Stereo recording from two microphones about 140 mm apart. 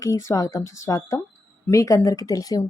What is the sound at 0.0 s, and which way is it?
A woman's voice, 20° left (ahead or behind).